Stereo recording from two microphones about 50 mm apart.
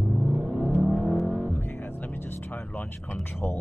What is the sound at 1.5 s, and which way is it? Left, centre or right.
Music, left.